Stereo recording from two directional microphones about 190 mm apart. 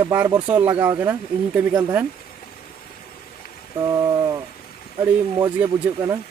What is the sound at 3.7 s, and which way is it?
Rain, 15° right (ahead or behind).